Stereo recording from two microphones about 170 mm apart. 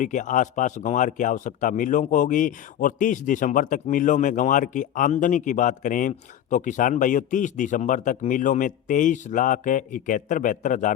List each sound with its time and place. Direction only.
0.0 s speech: 50° left (ahead or behind)